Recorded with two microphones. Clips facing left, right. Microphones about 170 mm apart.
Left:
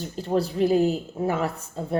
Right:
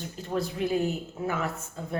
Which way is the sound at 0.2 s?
35° left (ahead or behind).